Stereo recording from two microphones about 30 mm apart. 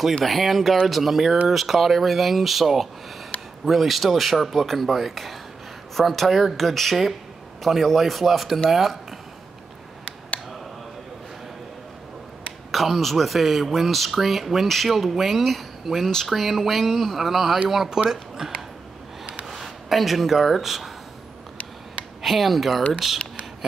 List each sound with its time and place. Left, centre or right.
0.2 s speech: centre
12.7 s speech: centre
17.8 s speech: right
19.9 s speech: centre
22.2 s speech: centre